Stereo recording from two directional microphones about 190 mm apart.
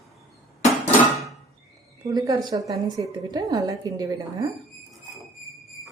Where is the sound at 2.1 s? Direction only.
20° right (ahead or behind).